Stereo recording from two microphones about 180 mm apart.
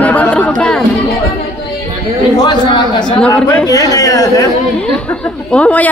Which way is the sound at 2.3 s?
25° left (ahead or behind).